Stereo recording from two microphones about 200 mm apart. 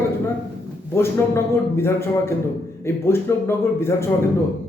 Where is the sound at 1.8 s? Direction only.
10° left (ahead or behind).